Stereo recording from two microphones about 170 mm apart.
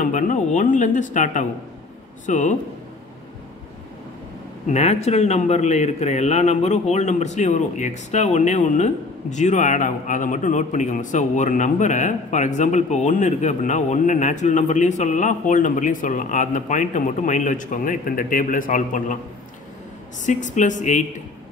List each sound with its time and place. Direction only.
0.0 s speech: 45° left (ahead or behind)
4.6 s speech: 40° left (ahead or behind)
20.2 s speech: 45° left (ahead or behind)